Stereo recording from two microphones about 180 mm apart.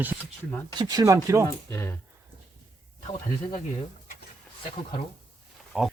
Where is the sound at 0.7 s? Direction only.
20° right (ahead or behind).